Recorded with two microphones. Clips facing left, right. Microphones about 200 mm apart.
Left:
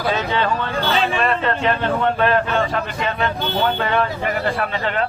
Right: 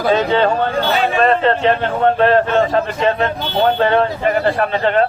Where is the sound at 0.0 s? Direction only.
50° right (ahead or behind).